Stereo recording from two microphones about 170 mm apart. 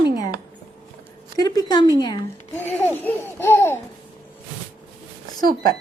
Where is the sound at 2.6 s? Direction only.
10° left (ahead or behind).